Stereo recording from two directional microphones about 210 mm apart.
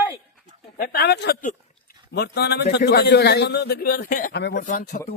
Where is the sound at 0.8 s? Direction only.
45° left (ahead or behind).